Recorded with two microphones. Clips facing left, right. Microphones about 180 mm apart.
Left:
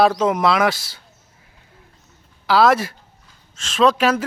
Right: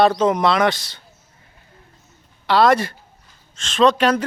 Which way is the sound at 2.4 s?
5° left (ahead or behind).